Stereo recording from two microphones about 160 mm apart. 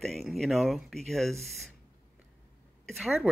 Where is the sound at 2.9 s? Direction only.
Centre (ahead or behind).